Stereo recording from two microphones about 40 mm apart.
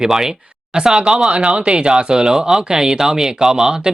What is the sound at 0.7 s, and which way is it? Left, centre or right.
Speech, right.